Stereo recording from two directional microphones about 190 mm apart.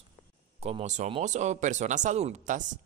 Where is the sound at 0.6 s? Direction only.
35° right (ahead or behind).